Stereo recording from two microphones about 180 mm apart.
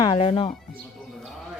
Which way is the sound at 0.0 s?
30° left (ahead or behind).